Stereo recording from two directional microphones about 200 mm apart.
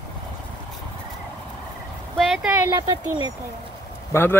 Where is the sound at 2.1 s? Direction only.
5° right (ahead or behind).